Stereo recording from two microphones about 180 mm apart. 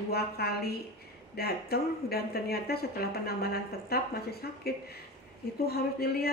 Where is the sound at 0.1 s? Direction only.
60° left (ahead or behind).